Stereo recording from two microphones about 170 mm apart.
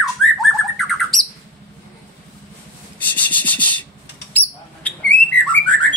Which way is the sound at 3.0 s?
10° left (ahead or behind).